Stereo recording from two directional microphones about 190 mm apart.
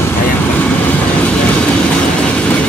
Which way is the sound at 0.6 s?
5° left (ahead or behind).